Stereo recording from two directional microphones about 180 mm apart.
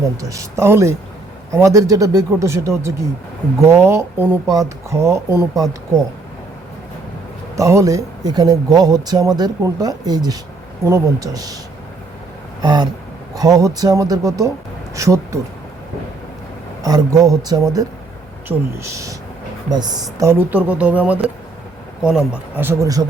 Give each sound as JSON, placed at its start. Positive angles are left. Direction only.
{"t": 0.0, "sound": "speech", "side_deg": -15}
{"t": 7.5, "sound": "speech", "side_deg": -15}
{"t": 12.6, "sound": "speech", "side_deg": -25}
{"t": 16.8, "sound": "speech", "side_deg": -20}